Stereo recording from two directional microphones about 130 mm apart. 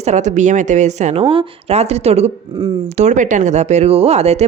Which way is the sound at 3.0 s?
70° right (ahead or behind).